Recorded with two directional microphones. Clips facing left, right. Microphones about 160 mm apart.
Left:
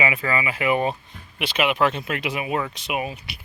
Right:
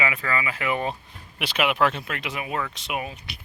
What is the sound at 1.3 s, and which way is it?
Speech, centre (ahead or behind).